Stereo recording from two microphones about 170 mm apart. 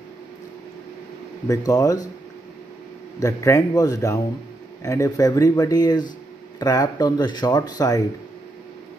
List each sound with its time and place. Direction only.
1.5 s speech: 20° left (ahead or behind)
3.2 s speech: 20° left (ahead or behind)